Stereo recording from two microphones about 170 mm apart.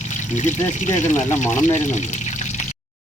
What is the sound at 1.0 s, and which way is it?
Speech, 45° left (ahead or behind).